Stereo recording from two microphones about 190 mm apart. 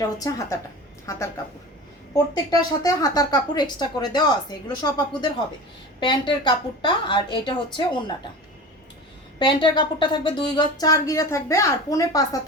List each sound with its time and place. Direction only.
0.0 s a woman's voice: 15° left (ahead or behind)
2.1 s a woman's voice: 20° left (ahead or behind)
9.4 s a woman's voice: 25° left (ahead or behind)